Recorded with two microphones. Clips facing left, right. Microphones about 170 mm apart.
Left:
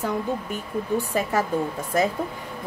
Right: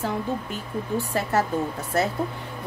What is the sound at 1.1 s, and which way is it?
Speech, 15° left (ahead or behind).